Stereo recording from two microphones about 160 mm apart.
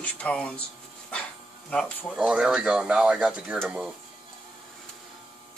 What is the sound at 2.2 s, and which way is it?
Speech, 5° right (ahead or behind).